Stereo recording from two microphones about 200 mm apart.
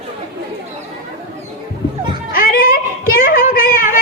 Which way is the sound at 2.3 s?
45° left (ahead or behind).